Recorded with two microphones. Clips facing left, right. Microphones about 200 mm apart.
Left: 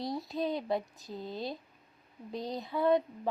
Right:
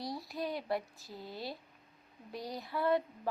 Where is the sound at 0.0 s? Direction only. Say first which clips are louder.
Left 5 dB; 20° left (ahead or behind).